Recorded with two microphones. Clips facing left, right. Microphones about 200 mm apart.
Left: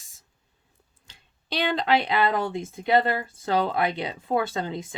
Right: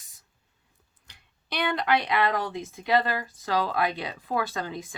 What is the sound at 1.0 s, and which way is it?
Speech, 25° left (ahead or behind).